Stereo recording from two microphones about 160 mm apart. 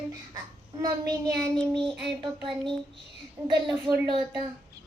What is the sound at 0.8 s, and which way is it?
Child singing, 25° right (ahead or behind).